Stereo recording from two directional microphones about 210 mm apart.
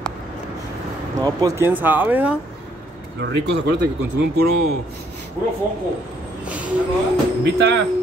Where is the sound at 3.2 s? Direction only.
55° right (ahead or behind).